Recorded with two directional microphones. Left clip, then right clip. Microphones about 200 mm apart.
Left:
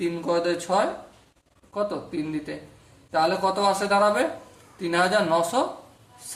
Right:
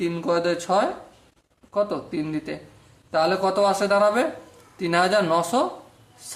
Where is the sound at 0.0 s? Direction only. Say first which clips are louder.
Right 1 dB; 35° right (ahead or behind).